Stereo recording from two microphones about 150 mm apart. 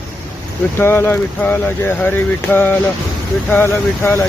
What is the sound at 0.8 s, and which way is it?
Speech, 15° left (ahead or behind).